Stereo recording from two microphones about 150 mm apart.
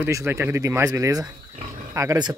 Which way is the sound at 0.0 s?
15° right (ahead or behind).